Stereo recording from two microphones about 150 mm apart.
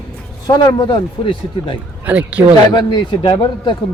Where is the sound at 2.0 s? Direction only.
10° right (ahead or behind).